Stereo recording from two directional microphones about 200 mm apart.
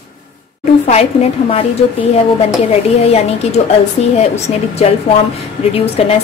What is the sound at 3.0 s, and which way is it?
A woman's voice, 30° left (ahead or behind).